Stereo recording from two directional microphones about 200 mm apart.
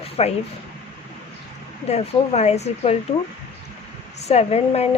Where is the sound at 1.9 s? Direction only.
35° left (ahead or behind).